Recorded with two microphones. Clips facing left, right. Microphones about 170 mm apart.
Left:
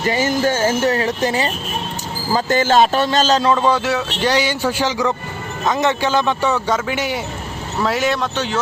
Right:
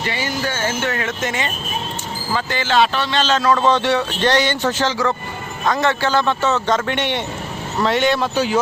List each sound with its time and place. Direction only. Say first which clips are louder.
0.0 s speech: left 6 dB; 45° left (ahead or behind)
3.5 s a man's voice: even; 15° left (ahead or behind)
3.8 s a man's voice: right 2 dB; 5° left (ahead or behind)